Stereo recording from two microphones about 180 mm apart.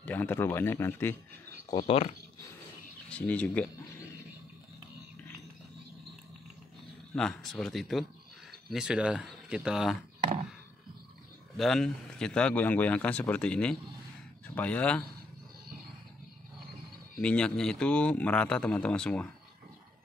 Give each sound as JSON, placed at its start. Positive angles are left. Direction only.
{"t": 0.0, "sound": "a man's voice", "side_deg": 10}
{"t": 1.7, "sound": "speech", "side_deg": 30}
{"t": 3.1, "sound": "a man's voice", "side_deg": 5}
{"t": 7.2, "sound": "speech", "side_deg": 5}
{"t": 11.5, "sound": "a man's voice", "side_deg": 0}
{"t": 17.2, "sound": "a man's voice", "side_deg": 5}